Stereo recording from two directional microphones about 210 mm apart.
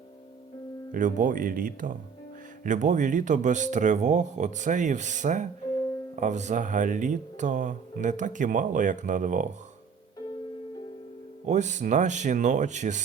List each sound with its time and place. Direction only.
0.9 s speech: 40° right (ahead or behind)
11.4 s speech: 35° right (ahead or behind)